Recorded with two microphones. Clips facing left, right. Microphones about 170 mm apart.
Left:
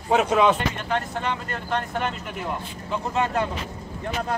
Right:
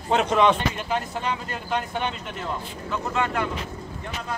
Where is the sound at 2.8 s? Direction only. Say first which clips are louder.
Left 1 dB; 30° left (ahead or behind).